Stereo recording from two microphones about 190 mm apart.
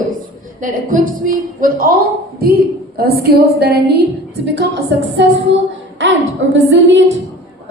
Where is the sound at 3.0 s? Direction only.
55° right (ahead or behind); by 7.1 s 80° right.